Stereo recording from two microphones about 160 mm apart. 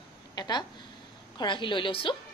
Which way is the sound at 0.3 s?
25° left (ahead or behind).